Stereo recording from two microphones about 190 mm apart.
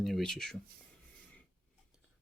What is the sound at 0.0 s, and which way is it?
Speech, centre (ahead or behind).